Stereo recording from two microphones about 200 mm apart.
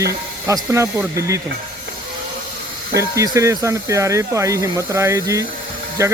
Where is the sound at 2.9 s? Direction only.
15° right (ahead or behind).